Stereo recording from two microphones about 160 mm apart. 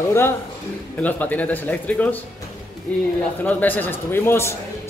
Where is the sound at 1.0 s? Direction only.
10° left (ahead or behind).